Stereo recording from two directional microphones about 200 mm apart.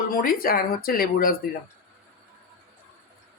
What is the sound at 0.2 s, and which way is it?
Speech, 45° left (ahead or behind).